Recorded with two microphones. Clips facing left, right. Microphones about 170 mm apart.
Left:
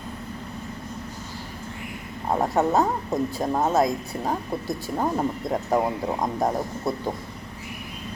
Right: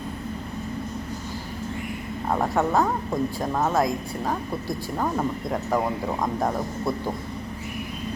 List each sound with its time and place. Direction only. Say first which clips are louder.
2.3 s speech: left 1 dB; 20° left (ahead or behind)